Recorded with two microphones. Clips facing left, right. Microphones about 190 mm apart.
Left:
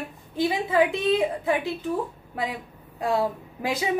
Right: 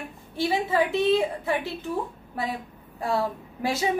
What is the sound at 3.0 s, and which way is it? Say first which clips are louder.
Speech: left 2 dB; 15° left (ahead or behind).